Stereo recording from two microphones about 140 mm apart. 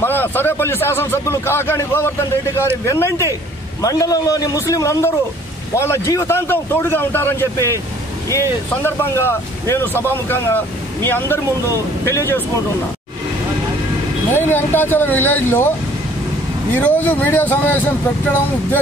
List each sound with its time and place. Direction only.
0.0 s a man's voice: 15° left (ahead or behind)
14.3 s speech: 15° left (ahead or behind)
16.7 s speech: 10° left (ahead or behind)